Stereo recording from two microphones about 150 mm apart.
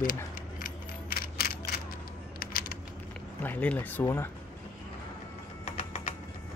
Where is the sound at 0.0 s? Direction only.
65° left (ahead or behind).